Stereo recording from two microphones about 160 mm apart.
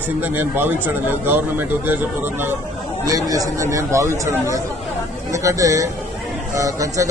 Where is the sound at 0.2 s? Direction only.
10° right (ahead or behind).